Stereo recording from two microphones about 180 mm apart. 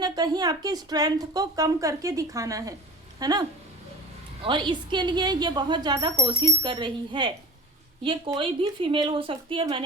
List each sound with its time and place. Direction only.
0.0 s speech: 20° right (ahead or behind)
4.4 s speech: 25° right (ahead or behind)